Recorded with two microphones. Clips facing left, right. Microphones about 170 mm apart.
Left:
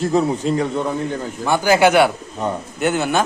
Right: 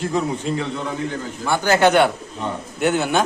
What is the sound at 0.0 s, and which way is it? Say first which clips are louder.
Speech: left 5 dB; 40° left (ahead or behind).